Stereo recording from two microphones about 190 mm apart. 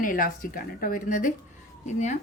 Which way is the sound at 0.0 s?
45° left (ahead or behind).